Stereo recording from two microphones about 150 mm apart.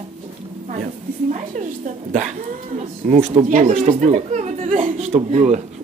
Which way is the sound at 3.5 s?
55° right (ahead or behind).